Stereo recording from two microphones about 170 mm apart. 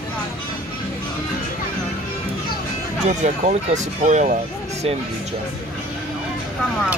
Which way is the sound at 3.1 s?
45° right (ahead or behind).